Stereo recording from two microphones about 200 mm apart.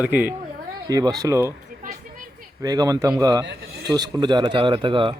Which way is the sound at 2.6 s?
20° right (ahead or behind).